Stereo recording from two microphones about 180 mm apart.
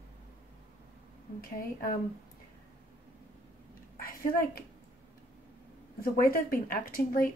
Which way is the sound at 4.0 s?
50° left (ahead or behind).